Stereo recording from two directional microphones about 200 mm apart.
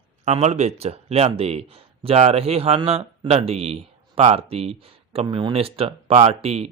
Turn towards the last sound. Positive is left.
turn(degrees=-30)  # may be behind; listen again after turning